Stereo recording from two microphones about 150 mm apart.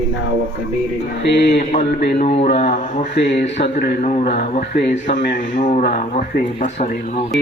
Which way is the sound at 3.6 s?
85° left.